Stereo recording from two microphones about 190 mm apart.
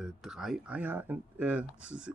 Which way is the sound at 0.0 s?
Centre (ahead or behind).